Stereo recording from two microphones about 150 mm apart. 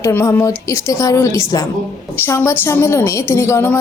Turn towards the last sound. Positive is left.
turn(degrees=15)  # may be behind; listen again after turning